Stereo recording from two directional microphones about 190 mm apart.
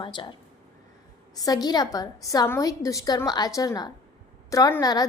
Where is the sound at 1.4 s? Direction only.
20° left (ahead or behind).